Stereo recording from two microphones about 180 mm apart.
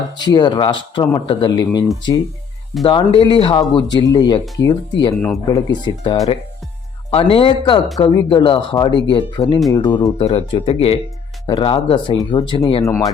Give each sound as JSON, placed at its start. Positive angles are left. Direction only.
{"t": 0.2, "sound": "speech", "side_deg": 25}
{"t": 10.2, "sound": "speech", "side_deg": 30}
{"t": 12.8, "sound": "speech", "side_deg": 15}